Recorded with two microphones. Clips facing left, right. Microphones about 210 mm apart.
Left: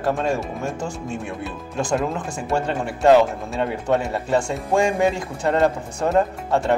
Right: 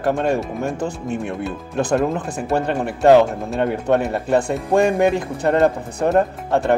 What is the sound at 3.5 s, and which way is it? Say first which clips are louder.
Speech: right 3 dB; 60° right (ahead or behind).